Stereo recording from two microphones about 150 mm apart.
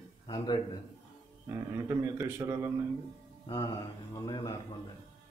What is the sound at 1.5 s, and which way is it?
A man's voice, 20° right (ahead or behind).